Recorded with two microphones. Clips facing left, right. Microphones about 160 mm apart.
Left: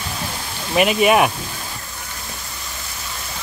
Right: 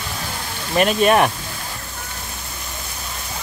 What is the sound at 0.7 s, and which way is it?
Speech, 5° left (ahead or behind).